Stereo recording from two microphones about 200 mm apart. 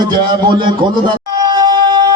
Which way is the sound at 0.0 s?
25° right (ahead or behind).